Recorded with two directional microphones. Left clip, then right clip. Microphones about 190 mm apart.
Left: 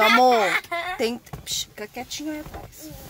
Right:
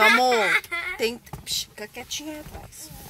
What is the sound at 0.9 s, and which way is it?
Speech, 20° left (ahead or behind).